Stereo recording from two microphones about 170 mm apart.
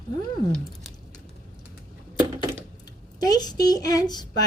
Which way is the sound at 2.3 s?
25° right (ahead or behind).